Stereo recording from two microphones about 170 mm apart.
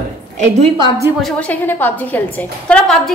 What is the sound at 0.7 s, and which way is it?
Speech, 20° right (ahead or behind).